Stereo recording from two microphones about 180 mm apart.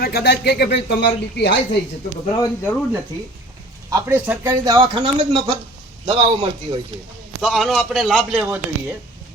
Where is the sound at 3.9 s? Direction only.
15° right (ahead or behind).